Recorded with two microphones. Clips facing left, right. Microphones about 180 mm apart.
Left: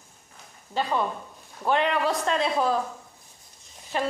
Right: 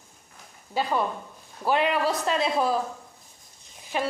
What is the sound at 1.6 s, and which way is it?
Speech, 5° right (ahead or behind).